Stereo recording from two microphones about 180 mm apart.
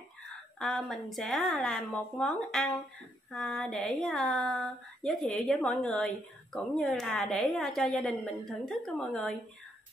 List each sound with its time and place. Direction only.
0.6 s speech: 5° left (ahead or behind)